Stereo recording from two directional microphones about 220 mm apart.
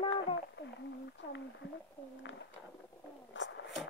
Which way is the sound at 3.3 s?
55° left (ahead or behind).